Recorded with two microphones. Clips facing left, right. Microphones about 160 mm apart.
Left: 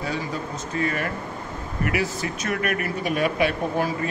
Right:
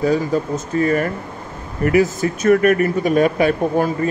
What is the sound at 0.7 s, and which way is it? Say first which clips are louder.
Speech: right 8 dB; 40° right (ahead or behind).